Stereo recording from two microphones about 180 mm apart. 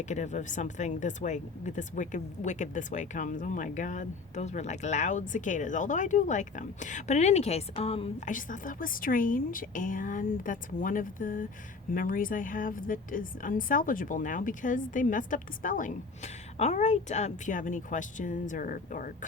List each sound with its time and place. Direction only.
0.0 s a woman's voice: 40° left (ahead or behind)
8.3 s a woman's voice: 45° left (ahead or behind)